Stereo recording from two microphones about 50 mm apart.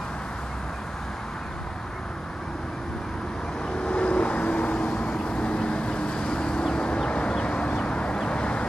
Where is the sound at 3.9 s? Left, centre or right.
Left.